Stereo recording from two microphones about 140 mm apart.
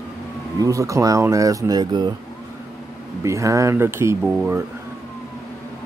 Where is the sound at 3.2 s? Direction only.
20° right (ahead or behind).